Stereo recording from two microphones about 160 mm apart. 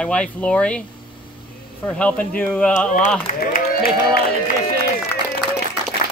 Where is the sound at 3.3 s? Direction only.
55° left (ahead or behind).